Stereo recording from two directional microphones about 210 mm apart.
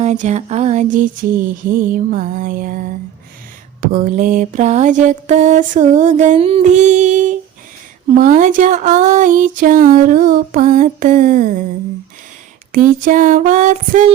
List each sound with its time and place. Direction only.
0.0 s music: 35° right (ahead or behind)
1.9 s mantra: 40° right (ahead or behind)
12.7 s mantra: 40° right (ahead or behind)